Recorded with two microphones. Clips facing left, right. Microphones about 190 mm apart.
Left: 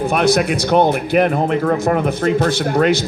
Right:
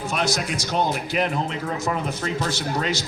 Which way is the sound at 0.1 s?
60° left (ahead or behind).